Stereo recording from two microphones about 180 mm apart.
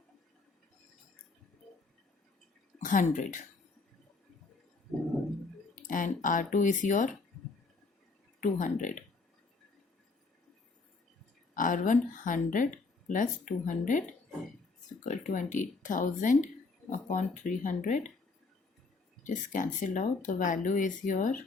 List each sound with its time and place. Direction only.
2.8 s speech: 45° left (ahead or behind)
5.7 s speech: 45° left (ahead or behind)
8.4 s speech: 45° left (ahead or behind)
11.5 s speech: 45° left (ahead or behind)
15.0 s speech: 45° left (ahead or behind)
19.2 s speech: 45° left (ahead or behind)